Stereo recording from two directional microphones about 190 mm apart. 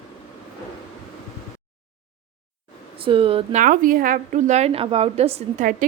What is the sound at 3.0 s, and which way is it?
Speech, 30° right (ahead or behind).